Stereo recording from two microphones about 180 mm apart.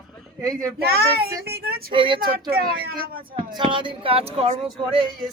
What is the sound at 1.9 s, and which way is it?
Speech, 30° right (ahead or behind).